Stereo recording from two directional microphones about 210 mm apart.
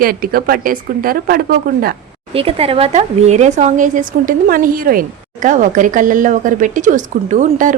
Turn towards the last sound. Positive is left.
turn(degrees=-35)  # may be behind; listen again after turning